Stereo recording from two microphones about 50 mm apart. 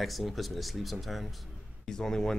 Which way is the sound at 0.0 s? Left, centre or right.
Centre.